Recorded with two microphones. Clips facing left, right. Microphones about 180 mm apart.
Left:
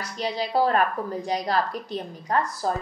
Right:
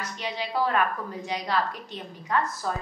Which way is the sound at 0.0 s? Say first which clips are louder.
Left 4 dB; 35° left (ahead or behind).